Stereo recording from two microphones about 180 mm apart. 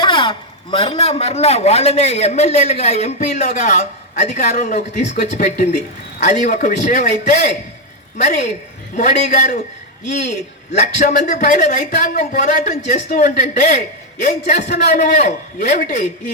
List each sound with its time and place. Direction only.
0.0 s a man's voice: 25° left (ahead or behind); by 16.0 s 45° left (ahead or behind)